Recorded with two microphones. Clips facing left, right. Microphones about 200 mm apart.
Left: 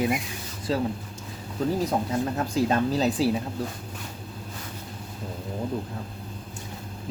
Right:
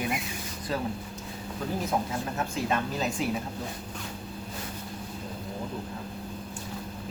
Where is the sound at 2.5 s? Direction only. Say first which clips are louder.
Left 8 dB; 35° left (ahead or behind).